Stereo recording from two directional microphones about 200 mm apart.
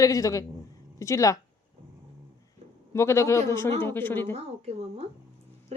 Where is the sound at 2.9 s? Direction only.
15° left (ahead or behind).